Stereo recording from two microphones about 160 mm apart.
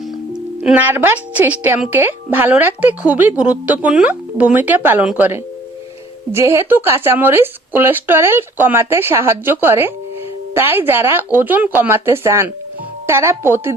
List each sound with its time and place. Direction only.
0.6 s a woman's voice: 10° right (ahead or behind)